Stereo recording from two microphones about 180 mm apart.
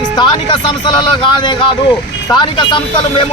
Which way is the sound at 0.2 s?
25° left (ahead or behind).